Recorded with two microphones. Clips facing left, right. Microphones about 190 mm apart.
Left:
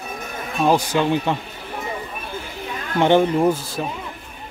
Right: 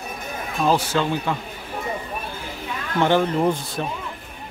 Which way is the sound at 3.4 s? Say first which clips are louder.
Left 2 dB; 5° left (ahead or behind).